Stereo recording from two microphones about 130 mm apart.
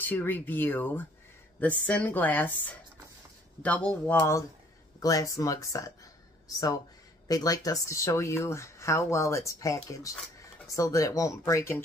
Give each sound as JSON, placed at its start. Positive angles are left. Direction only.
{"t": 0.0, "sound": "a woman's voice", "side_deg": 15}
{"t": 7.2, "sound": "speech", "side_deg": 30}